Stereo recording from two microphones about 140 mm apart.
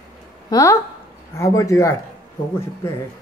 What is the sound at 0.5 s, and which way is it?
Speech, 25° left (ahead or behind).